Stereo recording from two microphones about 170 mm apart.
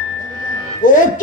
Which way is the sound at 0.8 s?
50° left (ahead or behind).